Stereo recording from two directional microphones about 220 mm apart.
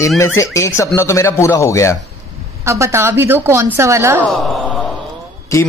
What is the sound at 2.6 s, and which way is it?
A woman's voice, 15° right (ahead or behind).